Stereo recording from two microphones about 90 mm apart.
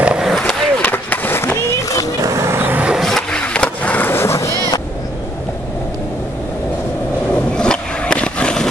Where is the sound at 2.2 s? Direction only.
35° right (ahead or behind).